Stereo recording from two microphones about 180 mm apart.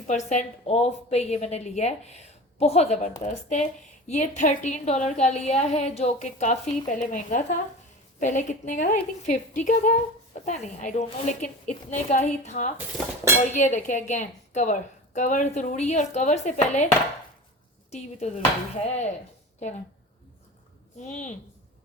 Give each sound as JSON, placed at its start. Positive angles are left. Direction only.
{"t": 0.1, "sound": "a woman's voice", "side_deg": 40}
{"t": 17.9, "sound": "a woman's voice", "side_deg": 35}
{"t": 21.0, "sound": "speech", "side_deg": 40}